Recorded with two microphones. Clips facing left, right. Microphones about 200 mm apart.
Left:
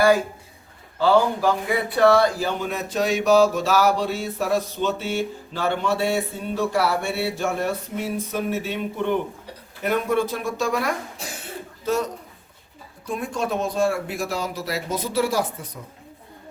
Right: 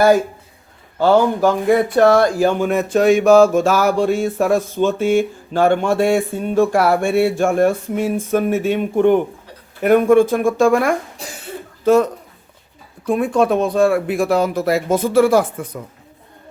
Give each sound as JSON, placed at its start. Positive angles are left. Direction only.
{"t": 0.9, "sound": "speech", "side_deg": -50}
{"t": 13.1, "sound": "speech", "side_deg": -60}